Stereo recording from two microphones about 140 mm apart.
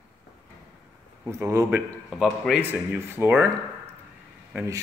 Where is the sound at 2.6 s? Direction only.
15° right (ahead or behind).